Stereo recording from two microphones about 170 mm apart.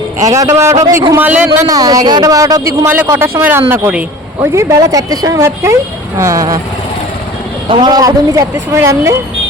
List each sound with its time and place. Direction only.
0.2 s speech: 20° right (ahead or behind)
1.5 s speech: 20° right (ahead or behind)
7.7 s speech: 25° right (ahead or behind)